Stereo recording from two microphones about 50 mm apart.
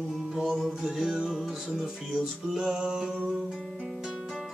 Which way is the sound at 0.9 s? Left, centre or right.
Centre.